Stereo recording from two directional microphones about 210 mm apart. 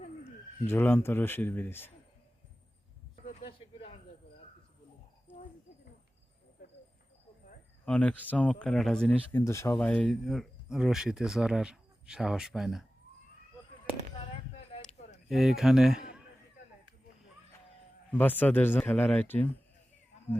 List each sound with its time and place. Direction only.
0.7 s speech: 10° left (ahead or behind)
3.4 s snake: 25° left (ahead or behind)
7.9 s speech: 5° left (ahead or behind)
15.3 s a man's voice: centre (ahead or behind)
18.1 s speech: 10° left (ahead or behind)